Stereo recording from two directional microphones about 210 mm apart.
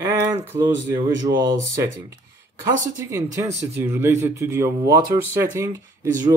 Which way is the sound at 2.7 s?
15° right (ahead or behind).